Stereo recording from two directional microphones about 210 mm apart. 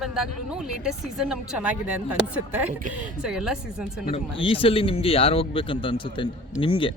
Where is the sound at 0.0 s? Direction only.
Centre (ahead or behind).